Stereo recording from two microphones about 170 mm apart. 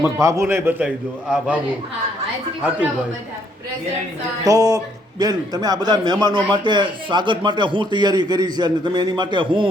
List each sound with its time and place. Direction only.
0.2 s a man's voice: 15° right (ahead or behind)
4.4 s a man's voice: 20° right (ahead or behind)